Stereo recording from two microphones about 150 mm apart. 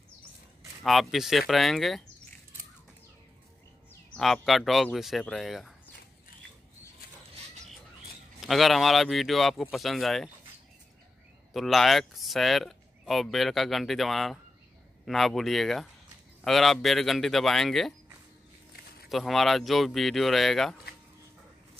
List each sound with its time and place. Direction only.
0.8 s speech: centre (ahead or behind)
4.2 s speech: centre (ahead or behind)
8.4 s speech: centre (ahead or behind)
11.5 s speech: centre (ahead or behind)
19.0 s speech: centre (ahead or behind)